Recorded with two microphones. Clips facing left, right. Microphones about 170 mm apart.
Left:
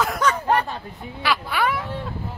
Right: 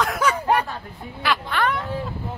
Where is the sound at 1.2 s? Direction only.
5° left (ahead or behind).